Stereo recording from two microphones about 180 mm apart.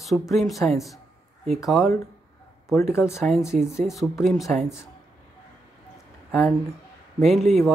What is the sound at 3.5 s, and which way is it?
Speech, 45° right (ahead or behind).